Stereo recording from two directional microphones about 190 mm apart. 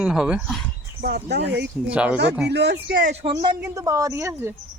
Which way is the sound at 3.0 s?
35° right (ahead or behind).